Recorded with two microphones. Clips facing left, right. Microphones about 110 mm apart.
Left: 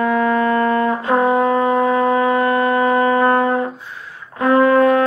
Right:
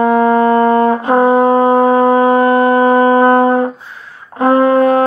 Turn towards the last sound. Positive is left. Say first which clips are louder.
# right 3 dB
turn(degrees=-25)  # may be behind; listen again after turning